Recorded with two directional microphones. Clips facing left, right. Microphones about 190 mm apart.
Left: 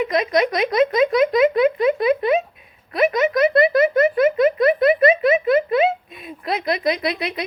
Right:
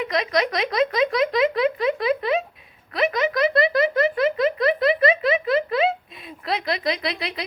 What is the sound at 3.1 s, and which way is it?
Speech, 25° left (ahead or behind).